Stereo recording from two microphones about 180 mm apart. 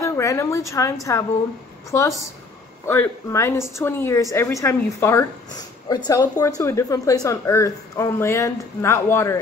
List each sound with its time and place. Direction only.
0.0 s a woman's voice: 15° left (ahead or behind)